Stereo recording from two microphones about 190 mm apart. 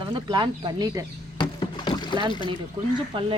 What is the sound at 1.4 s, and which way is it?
Rowboat, 25° left (ahead or behind).